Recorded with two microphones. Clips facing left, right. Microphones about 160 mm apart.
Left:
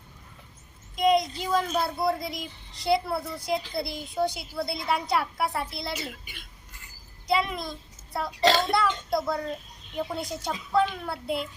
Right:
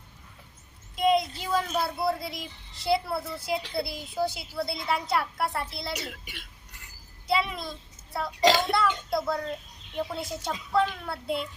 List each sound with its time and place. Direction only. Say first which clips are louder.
0.9 s a woman's voice: left 1 dB; 5° right (ahead or behind)
6.2 s a sound: right 2 dB; 75° right (ahead or behind)
7.3 s a child's voice: left 1 dB; centre (ahead or behind)
8.4 s a child's voice: even; 15° right (ahead or behind)
8.7 s a woman's voice: left 1 dB; centre (ahead or behind)